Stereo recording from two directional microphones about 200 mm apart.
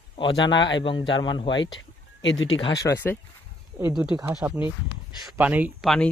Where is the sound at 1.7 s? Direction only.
70° left (ahead or behind).